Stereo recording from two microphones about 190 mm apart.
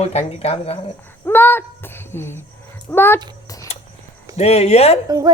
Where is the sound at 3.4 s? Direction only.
15° left (ahead or behind).